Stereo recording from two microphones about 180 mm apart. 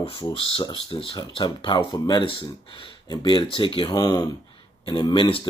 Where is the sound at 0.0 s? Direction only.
30° left (ahead or behind).